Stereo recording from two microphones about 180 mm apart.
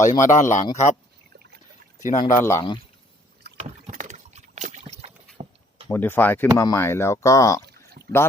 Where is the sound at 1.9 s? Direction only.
45° left (ahead or behind).